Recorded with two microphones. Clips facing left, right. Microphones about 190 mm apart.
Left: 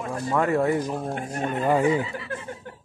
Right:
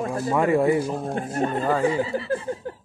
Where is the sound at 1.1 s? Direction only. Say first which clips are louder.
Right 3 dB; 35° right (ahead or behind).